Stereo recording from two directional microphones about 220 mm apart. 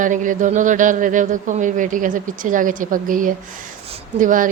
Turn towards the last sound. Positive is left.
turn(degrees=-35)  # may be behind; listen again after turning